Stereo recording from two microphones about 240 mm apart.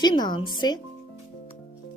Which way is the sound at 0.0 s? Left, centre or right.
Centre.